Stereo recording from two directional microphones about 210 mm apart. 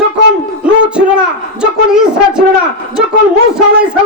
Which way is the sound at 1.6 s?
5° right (ahead or behind).